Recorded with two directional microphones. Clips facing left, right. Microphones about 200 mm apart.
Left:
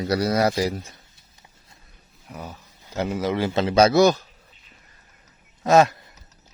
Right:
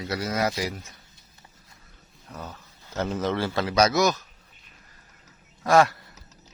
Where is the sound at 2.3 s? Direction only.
10° left (ahead or behind); by 4.2 s 30° left (ahead or behind).